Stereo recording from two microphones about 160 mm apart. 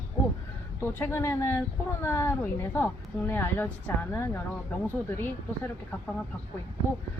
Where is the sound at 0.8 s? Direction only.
15° left (ahead or behind).